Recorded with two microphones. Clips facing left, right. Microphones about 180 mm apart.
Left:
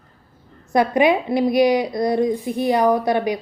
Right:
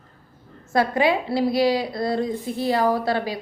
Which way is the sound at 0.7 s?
20° left (ahead or behind).